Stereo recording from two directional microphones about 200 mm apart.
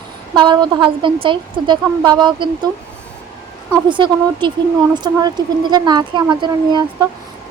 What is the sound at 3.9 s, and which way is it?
Speech, 25° right (ahead or behind).